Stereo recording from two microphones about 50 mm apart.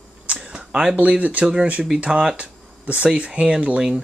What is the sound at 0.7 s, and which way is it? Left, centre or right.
Speech, centre.